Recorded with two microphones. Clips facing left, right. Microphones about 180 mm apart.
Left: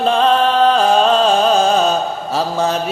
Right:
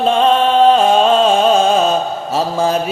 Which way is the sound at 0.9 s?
5° right (ahead or behind).